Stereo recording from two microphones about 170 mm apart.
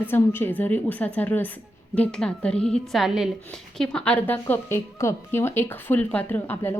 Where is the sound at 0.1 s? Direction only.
10° left (ahead or behind).